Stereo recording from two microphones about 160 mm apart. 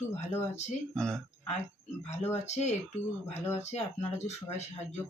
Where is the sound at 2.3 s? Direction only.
45° left (ahead or behind).